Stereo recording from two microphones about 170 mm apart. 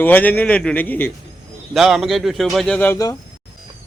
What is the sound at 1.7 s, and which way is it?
Speech, centre (ahead or behind).